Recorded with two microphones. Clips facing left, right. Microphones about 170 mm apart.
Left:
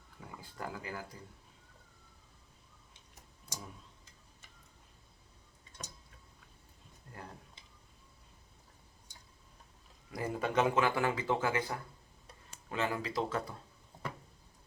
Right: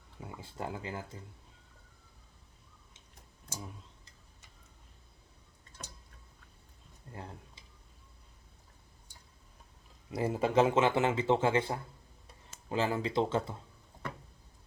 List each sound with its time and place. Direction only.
0.2 s speech: 25° right (ahead or behind)
7.1 s speech: 25° right (ahead or behind)
10.2 s a man's voice: 25° right (ahead or behind)